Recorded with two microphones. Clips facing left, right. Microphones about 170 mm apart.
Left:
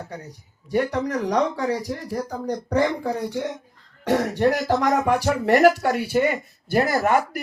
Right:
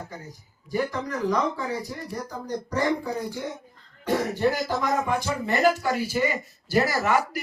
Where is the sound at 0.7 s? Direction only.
80° left.